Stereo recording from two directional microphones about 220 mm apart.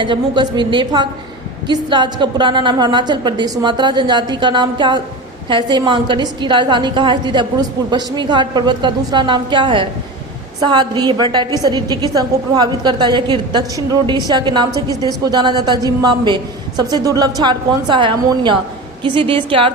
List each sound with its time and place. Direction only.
0.0 s a woman's voice: 20° right (ahead or behind)